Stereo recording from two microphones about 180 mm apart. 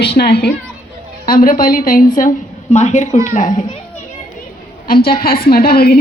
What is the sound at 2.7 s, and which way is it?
Speech, 40° left (ahead or behind).